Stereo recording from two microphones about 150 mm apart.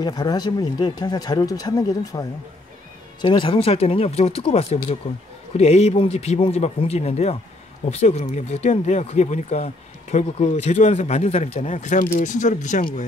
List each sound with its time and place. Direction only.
0.0 s speech: 30° left (ahead or behind); by 11.7 s 45° left (ahead or behind)
11.7 s speech: 60° left (ahead or behind)